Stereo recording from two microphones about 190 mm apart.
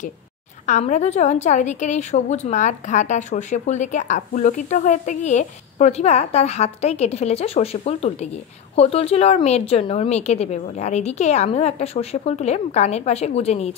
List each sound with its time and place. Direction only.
0.7 s a woman's voice: 40° left (ahead or behind)